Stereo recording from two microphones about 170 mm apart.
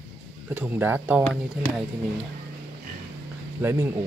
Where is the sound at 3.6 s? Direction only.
15° right (ahead or behind).